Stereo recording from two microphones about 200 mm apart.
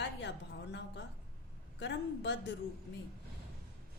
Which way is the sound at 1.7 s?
60° left (ahead or behind).